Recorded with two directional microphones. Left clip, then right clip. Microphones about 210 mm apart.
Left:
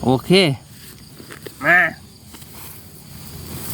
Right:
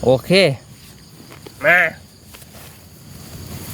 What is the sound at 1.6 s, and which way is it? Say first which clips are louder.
Speech: right 1 dB; 35° right (ahead or behind).